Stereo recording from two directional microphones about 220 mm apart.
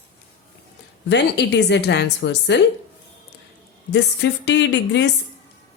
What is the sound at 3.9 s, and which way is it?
A woman's voice, 50° left (ahead or behind).